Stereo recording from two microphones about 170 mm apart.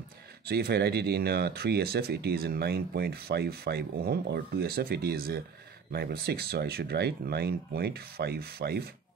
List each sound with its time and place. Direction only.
0.5 s speech: 70° right (ahead or behind)